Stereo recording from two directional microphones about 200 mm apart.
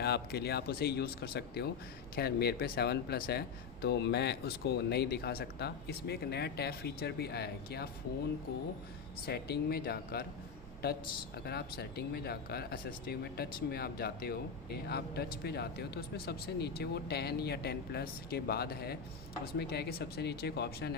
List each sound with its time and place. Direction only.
0.0 s speech: 55° left (ahead or behind)
9.2 s speech: 55° left (ahead or behind)